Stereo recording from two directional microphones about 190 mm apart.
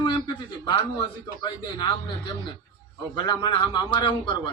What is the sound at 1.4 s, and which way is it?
A man's voice, 20° left (ahead or behind).